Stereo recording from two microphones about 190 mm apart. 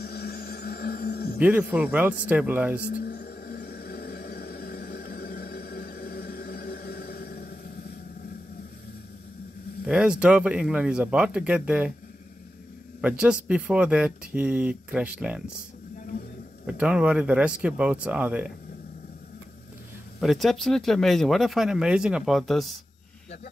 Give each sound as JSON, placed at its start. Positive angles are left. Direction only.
{"t": 0.0, "sound": "a sound", "side_deg": 55}
{"t": 1.4, "sound": "speech", "side_deg": -10}
{"t": 2.9, "sound": "a sound", "side_deg": 55}
{"t": 9.8, "sound": "speech", "side_deg": -5}
{"t": 13.0, "sound": "speech", "side_deg": -5}
{"t": 16.6, "sound": "speech", "side_deg": -5}
{"t": 20.2, "sound": "speech", "side_deg": 0}